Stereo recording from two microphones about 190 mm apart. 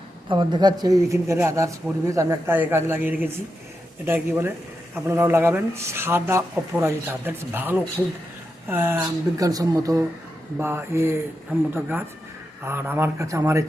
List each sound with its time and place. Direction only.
0.3 s speech: 25° right (ahead or behind)